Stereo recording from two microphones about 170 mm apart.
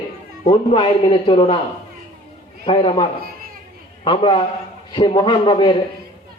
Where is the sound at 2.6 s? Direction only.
35° left (ahead or behind).